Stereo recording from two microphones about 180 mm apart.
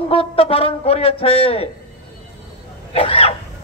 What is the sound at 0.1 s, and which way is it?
A man's voice, 30° left (ahead or behind).